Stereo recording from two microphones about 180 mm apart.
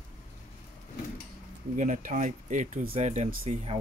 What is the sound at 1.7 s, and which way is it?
Speech, 45° right (ahead or behind).